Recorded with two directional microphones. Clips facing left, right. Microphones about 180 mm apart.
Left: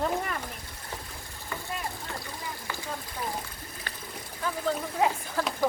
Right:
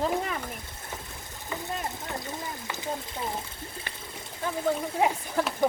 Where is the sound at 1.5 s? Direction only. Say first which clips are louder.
Right 2 dB; 20° right (ahead or behind).